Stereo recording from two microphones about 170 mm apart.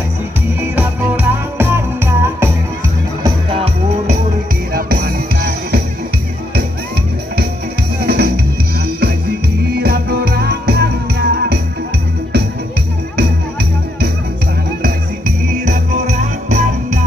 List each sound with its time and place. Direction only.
0.6 s music: 10° right (ahead or behind)
3.3 s music: 35° right (ahead or behind)
4.7 s music: 60° right (ahead or behind)
8.0 s music: 70° right (ahead or behind)
9.8 s music: 70° right (ahead or behind)
14.8 s music: 60° right (ahead or behind)